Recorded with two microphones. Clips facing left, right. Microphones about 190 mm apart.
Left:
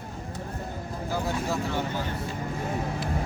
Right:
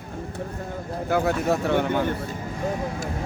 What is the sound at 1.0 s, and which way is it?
Speech, 65° right (ahead or behind).